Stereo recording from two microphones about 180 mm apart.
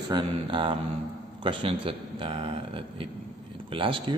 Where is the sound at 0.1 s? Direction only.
30° right (ahead or behind).